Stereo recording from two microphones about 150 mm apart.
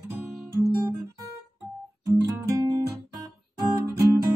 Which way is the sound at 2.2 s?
25° right (ahead or behind).